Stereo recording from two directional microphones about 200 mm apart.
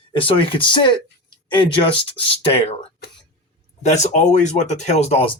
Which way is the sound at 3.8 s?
35° left (ahead or behind).